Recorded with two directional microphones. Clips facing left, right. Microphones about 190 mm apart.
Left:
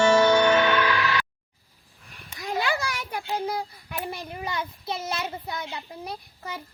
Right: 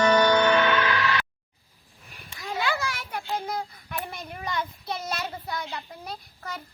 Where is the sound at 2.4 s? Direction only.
40° left (ahead or behind).